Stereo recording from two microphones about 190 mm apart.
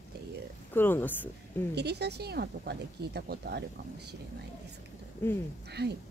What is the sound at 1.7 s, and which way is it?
Speech, 60° right (ahead or behind).